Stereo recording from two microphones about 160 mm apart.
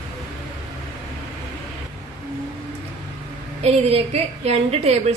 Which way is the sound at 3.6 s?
40° right (ahead or behind).